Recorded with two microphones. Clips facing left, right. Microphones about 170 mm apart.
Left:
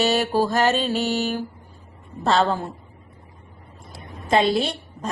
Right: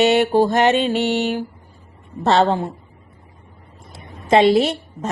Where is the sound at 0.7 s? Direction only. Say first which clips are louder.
Right 5 dB; 70° right (ahead or behind).